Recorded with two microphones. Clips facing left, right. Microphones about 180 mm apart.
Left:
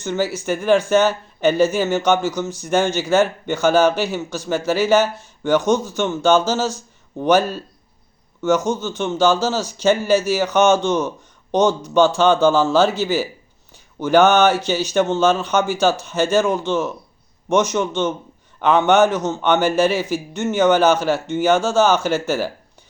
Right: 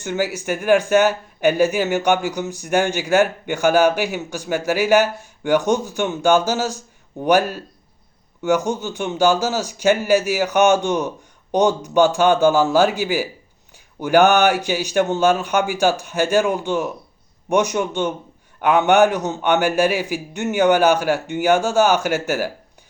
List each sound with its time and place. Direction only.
0.3 s speech: 15° right (ahead or behind)